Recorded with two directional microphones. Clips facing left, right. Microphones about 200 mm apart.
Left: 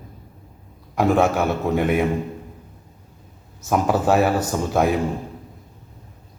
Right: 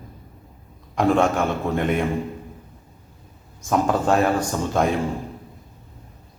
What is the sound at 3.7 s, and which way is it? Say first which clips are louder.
A man's voice: left 1 dB; 5° left (ahead or behind).